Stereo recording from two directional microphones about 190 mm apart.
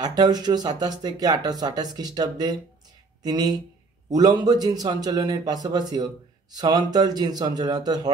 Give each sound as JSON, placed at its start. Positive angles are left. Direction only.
{"t": 0.0, "sound": "speech", "side_deg": -20}